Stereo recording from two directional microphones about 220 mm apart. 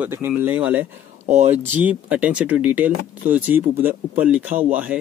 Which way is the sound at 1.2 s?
35° right (ahead or behind).